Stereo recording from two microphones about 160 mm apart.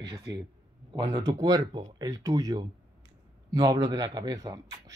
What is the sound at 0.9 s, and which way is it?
Speech, 25° right (ahead or behind).